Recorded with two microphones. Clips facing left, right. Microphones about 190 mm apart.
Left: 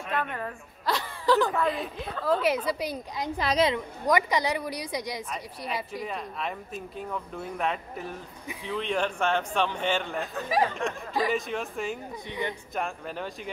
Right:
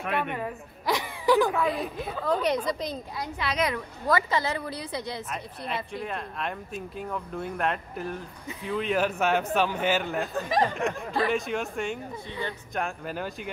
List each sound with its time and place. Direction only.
0.1 s speech: 10° right (ahead or behind)
1.5 s a woman's voice: centre (ahead or behind)
3.3 s a woman's voice: 40° left (ahead or behind)
3.6 s a woman's voice: 20° left (ahead or behind)
6.0 s a man's voice: centre (ahead or behind)
10.5 s speech: 5° left (ahead or behind)